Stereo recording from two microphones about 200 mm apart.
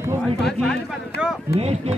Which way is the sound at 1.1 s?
55° left (ahead or behind).